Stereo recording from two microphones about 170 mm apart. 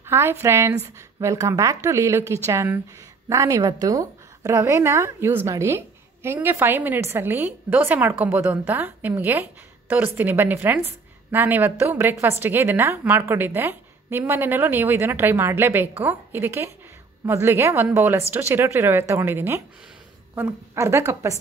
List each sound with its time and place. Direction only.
0.0 s a woman's voice: 15° right (ahead or behind)